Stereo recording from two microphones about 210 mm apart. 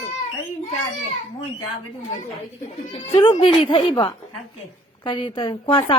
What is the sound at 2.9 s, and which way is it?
Speech, 25° left (ahead or behind).